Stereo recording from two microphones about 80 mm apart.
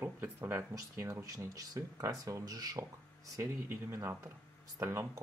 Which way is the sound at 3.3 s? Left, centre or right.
Right.